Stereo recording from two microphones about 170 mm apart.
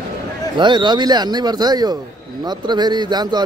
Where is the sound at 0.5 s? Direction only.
25° right (ahead or behind).